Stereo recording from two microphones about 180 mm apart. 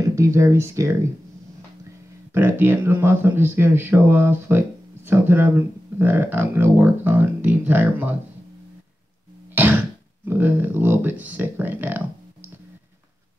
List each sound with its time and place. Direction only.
0.1 s speech: 15° right (ahead or behind)
2.3 s speech: 10° right (ahead or behind)
10.2 s speech: 10° right (ahead or behind)